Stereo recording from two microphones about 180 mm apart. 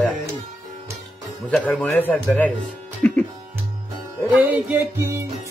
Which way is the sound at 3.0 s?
10° left (ahead or behind).